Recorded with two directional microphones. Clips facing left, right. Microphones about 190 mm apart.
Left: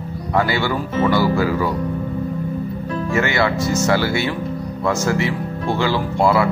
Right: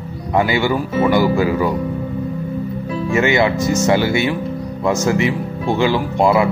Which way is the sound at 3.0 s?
20° right (ahead or behind).